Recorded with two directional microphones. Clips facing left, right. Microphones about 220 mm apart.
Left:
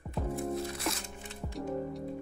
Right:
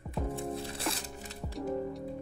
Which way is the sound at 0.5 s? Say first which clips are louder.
Left 2 dB; 30° right (ahead or behind).